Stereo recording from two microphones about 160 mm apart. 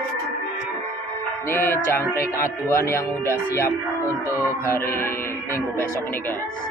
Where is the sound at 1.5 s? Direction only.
15° left (ahead or behind).